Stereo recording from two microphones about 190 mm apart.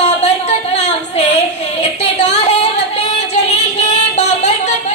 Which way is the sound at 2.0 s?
35° left (ahead or behind).